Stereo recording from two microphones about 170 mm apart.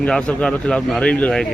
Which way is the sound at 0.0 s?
5° left (ahead or behind).